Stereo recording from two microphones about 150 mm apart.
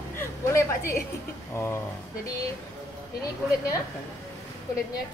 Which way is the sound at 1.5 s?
15° left (ahead or behind).